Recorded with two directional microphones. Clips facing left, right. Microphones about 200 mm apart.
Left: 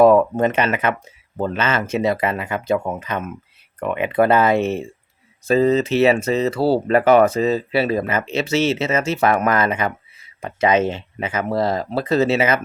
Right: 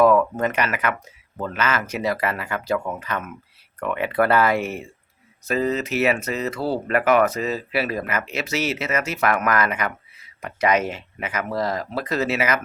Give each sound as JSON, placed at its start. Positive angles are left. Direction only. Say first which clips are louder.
{"t": 0.0, "sound": "speech", "louder": "left 4 dB", "side_deg": 30}